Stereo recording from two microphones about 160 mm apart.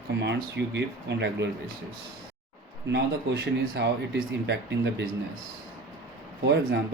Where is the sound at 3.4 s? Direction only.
90° right.